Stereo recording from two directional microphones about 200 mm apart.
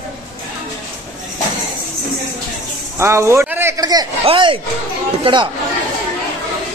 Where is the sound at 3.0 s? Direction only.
15° right (ahead or behind).